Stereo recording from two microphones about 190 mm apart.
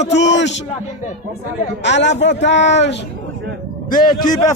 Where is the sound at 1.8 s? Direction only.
70° left (ahead or behind).